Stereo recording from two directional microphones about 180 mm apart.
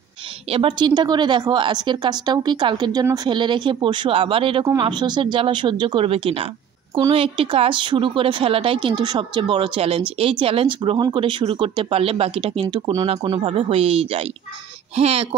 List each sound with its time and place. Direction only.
0.5 s a woman's voice: 30° right (ahead or behind)